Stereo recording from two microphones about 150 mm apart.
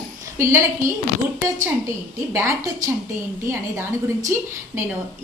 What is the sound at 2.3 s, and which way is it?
A woman's voice, 20° right (ahead or behind).